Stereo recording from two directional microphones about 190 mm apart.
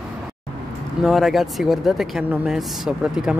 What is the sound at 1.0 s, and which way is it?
Speech, centre (ahead or behind).